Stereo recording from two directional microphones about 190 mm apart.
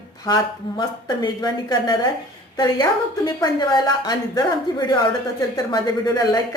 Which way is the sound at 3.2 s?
20° left (ahead or behind).